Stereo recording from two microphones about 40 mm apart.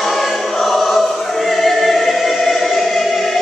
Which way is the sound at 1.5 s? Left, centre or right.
Centre.